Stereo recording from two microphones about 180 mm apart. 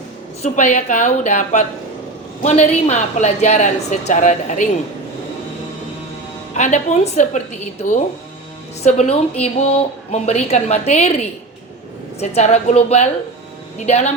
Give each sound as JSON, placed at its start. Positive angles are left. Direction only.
{"t": 0.4, "sound": "a woman's voice", "side_deg": 40}
{"t": 6.5, "sound": "a woman's voice", "side_deg": 40}